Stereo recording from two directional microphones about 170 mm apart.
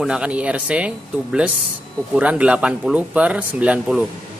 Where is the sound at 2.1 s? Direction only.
10° right (ahead or behind).